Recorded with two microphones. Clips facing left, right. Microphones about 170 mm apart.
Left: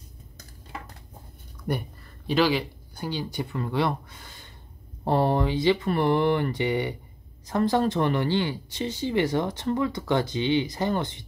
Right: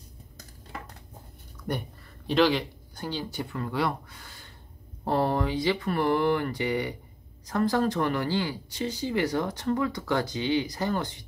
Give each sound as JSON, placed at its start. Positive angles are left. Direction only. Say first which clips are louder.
{"t": 2.2, "sound": "speech", "louder": "even", "side_deg": 5}